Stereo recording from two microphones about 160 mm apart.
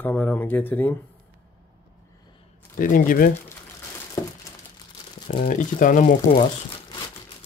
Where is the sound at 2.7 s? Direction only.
60° left (ahead or behind).